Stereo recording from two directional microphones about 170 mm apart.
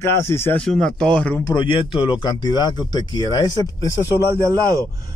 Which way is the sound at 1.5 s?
30° left (ahead or behind).